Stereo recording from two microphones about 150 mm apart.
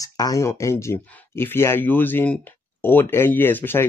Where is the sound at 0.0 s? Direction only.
25° left (ahead or behind).